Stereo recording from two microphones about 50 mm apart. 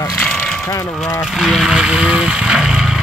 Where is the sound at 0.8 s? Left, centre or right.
Left.